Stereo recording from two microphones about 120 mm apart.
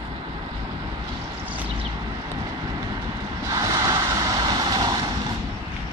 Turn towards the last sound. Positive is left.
turn(degrees=-35)  # may be behind; listen again after turning